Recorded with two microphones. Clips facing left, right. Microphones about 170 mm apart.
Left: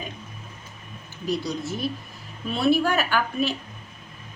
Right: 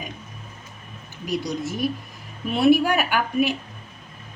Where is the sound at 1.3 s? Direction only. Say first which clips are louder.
Right 1 dB; 15° right (ahead or behind).